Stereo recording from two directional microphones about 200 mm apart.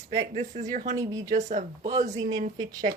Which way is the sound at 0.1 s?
35° right (ahead or behind).